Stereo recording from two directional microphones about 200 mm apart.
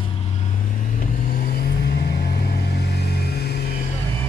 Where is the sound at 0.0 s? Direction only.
30° left (ahead or behind); by 3.9 s 50° left (ahead or behind).